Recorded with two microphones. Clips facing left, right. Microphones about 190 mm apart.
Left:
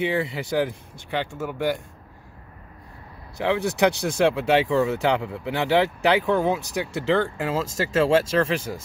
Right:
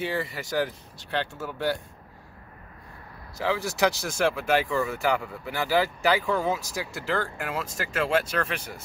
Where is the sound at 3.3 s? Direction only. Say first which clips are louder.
Left 4 dB; 20° left (ahead or behind).